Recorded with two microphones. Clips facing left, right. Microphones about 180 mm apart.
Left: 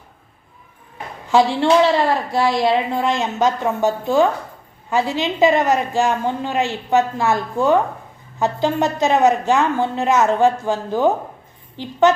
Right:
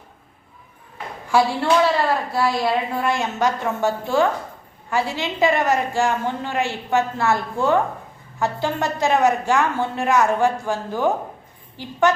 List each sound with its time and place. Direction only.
1.3 s a woman's voice: 20° left (ahead or behind)